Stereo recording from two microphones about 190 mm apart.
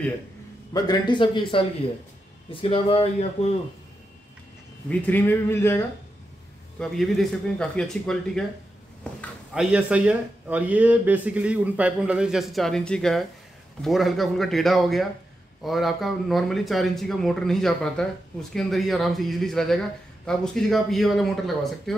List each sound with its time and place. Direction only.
0.7 s speech: 20° left (ahead or behind)
4.8 s speech: 10° left (ahead or behind)
6.8 s speech: centre (ahead or behind)
9.5 s speech: 5° right (ahead or behind)